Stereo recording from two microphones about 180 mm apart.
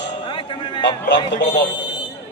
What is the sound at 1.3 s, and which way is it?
Speech, 75° left (ahead or behind).